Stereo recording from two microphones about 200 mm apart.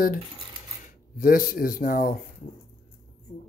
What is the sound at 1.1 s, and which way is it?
Speech, 45° left (ahead or behind).